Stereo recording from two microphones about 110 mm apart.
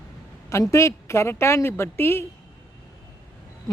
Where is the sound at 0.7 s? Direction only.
25° left (ahead or behind).